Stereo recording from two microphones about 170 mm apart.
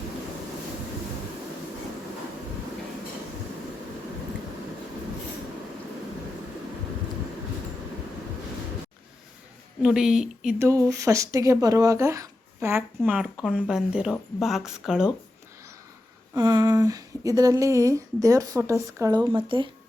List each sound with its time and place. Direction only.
9.8 s speech: 5° right (ahead or behind)
10.6 s speech: 15° right (ahead or behind)
16.3 s speech: 25° right (ahead or behind)
19.4 s speech: 30° right (ahead or behind)